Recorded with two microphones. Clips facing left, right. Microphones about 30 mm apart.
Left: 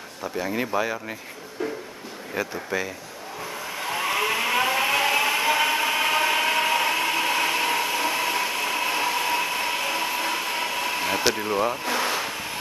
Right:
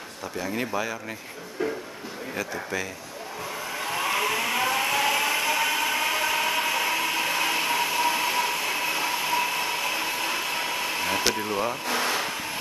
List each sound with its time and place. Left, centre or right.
0.2 s speech: centre
1.6 s speech: centre
2.3 s speech: centre
3.7 s vehicle: centre
6.4 s a sound: left
6.8 s a sound: centre